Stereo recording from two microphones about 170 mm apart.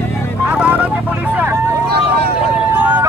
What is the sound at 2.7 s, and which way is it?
Vehicle, 10° right (ahead or behind).